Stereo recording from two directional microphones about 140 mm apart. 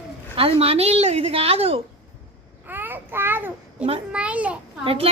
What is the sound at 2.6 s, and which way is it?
Babbling, 15° right (ahead or behind).